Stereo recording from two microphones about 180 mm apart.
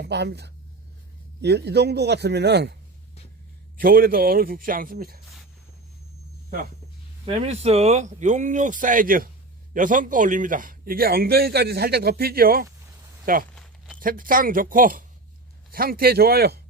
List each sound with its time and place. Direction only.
0.0 s a man's voice: 65° right (ahead or behind)
3.8 s speech: 55° right (ahead or behind)
7.3 s a man's voice: 35° right (ahead or behind); by 12.6 s 55° right (ahead or behind)
13.6 s a sound: 5° left (ahead or behind)
14.0 s a man's voice: 50° right (ahead or behind)